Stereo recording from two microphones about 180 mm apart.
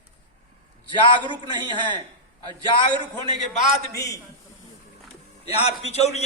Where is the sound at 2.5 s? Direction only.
25° right (ahead or behind).